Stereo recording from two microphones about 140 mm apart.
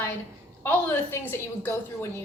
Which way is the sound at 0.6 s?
15° left (ahead or behind).